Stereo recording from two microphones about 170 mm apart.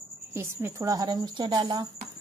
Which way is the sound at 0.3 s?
15° right (ahead or behind).